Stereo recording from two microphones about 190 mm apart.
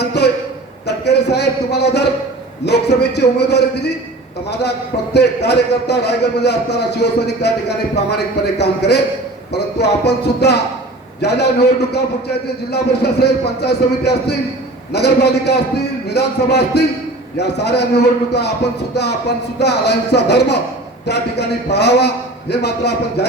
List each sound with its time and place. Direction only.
0.0 s a sound: 60° left (ahead or behind)
0.9 s a man's voice: 60° left (ahead or behind)
8.5 s a man's voice: 60° left (ahead or behind)
19.5 s a man's voice: 60° left (ahead or behind)